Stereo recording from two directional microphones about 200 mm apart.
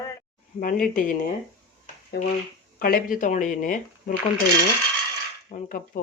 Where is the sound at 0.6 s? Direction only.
45° left (ahead or behind).